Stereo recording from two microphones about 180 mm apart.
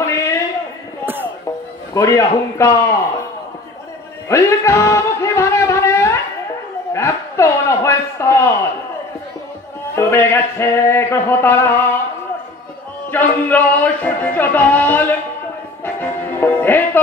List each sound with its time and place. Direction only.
0.0 s a sound: 15° left (ahead or behind)
1.0 s music: 10° right (ahead or behind)
2.0 s speech: 15° left (ahead or behind)
4.3 s music: 15° left (ahead or behind)
6.9 s a sound: 15° left (ahead or behind)
9.9 s speech: 15° left (ahead or behind)
13.1 s speech: 10° left (ahead or behind)
15.8 s music: 10° left (ahead or behind)